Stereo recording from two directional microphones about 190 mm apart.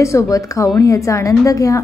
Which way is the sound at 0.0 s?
15° left (ahead or behind).